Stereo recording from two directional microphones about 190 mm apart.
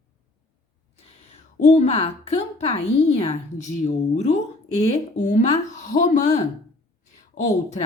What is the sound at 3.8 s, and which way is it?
A woman's voice, 35° left (ahead or behind).